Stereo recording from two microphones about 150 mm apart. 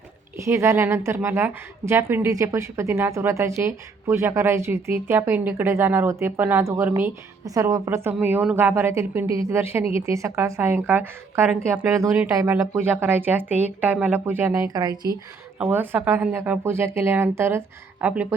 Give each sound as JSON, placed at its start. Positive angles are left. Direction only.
{"t": 0.4, "sound": "a woman's voice", "side_deg": -20}
{"t": 15.5, "sound": "a woman's voice", "side_deg": -10}